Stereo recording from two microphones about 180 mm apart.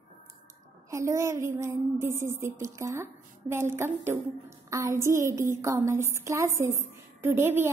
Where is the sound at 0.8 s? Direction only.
15° right (ahead or behind).